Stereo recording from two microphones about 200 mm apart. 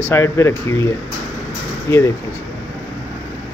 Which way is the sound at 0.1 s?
15° left (ahead or behind).